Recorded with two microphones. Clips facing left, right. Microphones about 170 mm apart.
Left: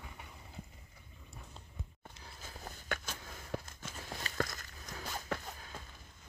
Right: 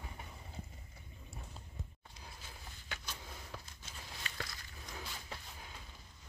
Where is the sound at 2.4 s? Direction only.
50° left (ahead or behind).